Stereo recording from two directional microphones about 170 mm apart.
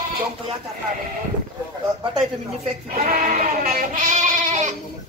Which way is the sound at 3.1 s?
50° right (ahead or behind).